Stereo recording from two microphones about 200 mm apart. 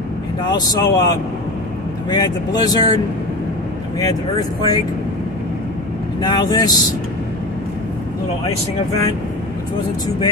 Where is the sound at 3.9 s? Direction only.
15° left (ahead or behind).